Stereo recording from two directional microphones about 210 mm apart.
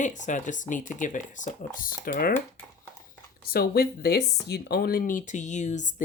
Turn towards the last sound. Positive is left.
turn(degrees=35)  # may be behind; listen again after turning